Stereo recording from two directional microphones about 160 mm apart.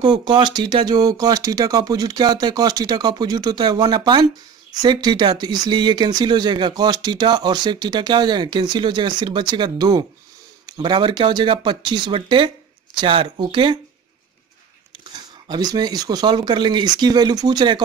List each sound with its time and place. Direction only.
0.0 s speech: 30° right (ahead or behind)
15.4 s speech: 25° right (ahead or behind)